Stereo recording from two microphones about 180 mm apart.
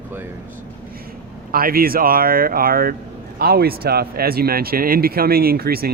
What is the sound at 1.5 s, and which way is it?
Speech, 55° right (ahead or behind).